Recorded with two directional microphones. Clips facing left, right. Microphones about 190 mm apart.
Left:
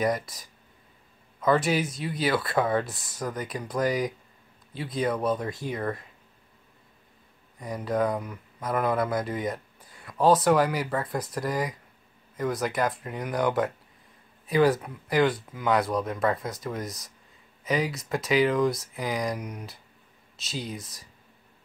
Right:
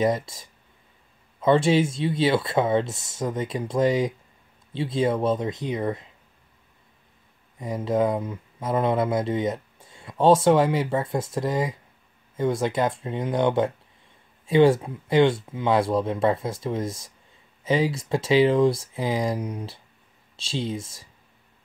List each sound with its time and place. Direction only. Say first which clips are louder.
0.0 s speech: right 4 dB; 25° right (ahead or behind)
7.5 s speech: right 4 dB; 25° right (ahead or behind)